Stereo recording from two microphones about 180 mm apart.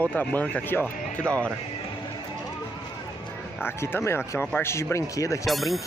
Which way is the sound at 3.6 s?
15° left (ahead or behind).